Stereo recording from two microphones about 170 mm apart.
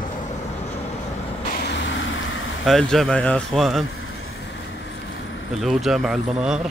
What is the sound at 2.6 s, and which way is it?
Speech, centre (ahead or behind).